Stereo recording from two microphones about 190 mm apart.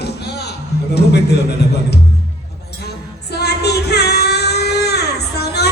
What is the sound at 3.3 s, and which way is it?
Child singing, 60° left (ahead or behind).